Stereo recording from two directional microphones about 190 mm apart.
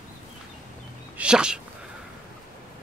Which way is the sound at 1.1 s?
5° right (ahead or behind).